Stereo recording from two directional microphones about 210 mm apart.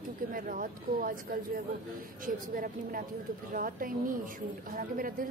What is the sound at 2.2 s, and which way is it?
Speech, 40° right (ahead or behind).